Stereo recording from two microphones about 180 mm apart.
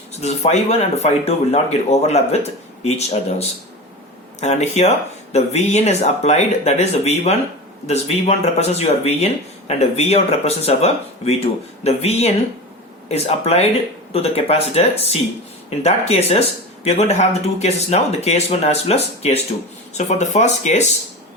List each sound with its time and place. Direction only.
0.1 s speech: 35° left (ahead or behind)